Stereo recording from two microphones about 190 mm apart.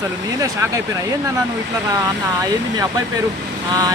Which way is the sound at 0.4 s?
15° right (ahead or behind).